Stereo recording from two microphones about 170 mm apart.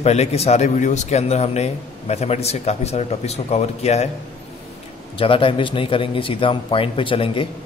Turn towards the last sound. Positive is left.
turn(degrees=30)  # may be behind; listen again after turning